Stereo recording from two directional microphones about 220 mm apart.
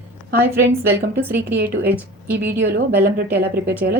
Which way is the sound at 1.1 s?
10° right (ahead or behind).